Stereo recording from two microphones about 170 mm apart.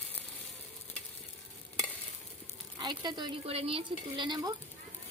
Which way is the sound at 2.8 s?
25° right (ahead or behind).